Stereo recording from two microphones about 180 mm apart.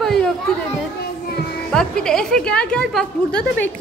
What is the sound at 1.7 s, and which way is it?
A woman's voice, 5° left (ahead or behind).